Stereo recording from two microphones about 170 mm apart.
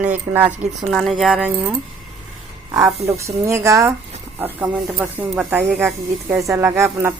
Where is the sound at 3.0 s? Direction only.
15° right (ahead or behind).